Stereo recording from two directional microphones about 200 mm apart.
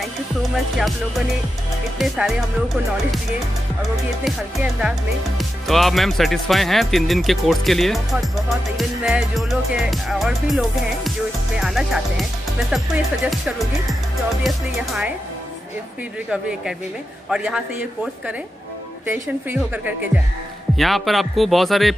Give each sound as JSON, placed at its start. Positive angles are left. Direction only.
{"t": 0.0, "sound": "speech", "side_deg": 0}
{"t": 5.4, "sound": "speech", "side_deg": 0}
{"t": 16.3, "sound": "speech", "side_deg": -5}